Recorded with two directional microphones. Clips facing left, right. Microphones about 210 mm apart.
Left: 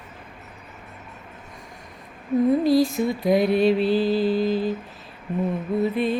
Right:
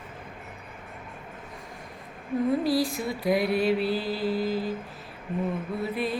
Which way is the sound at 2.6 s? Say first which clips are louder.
Left 7 dB; 25° left (ahead or behind).